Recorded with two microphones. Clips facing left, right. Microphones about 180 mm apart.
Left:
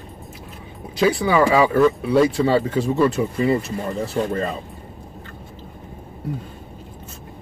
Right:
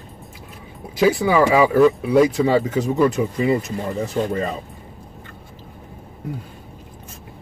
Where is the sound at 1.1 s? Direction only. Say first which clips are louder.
Right 1 dB; 20° right (ahead or behind).